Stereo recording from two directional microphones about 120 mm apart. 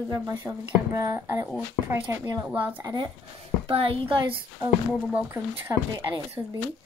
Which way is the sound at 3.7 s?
50° right (ahead or behind).